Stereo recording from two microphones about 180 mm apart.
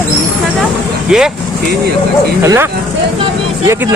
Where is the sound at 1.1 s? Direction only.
5° right (ahead or behind).